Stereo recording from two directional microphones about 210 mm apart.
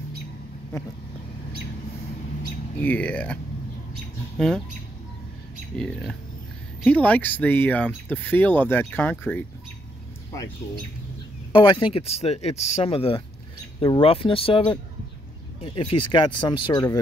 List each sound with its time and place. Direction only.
2.8 s speech: 5° left (ahead or behind)
4.4 s speech: centre (ahead or behind)
5.7 s speech: 5° left (ahead or behind)
11.5 s speech: 25° left (ahead or behind)